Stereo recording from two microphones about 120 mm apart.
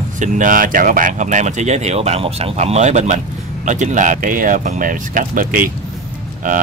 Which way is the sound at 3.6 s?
90° right.